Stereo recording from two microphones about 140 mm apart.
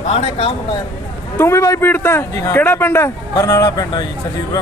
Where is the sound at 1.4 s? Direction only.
20° left (ahead or behind).